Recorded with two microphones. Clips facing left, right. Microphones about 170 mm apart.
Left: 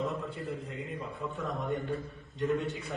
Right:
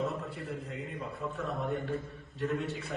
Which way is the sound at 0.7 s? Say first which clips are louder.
Even; centre (ahead or behind).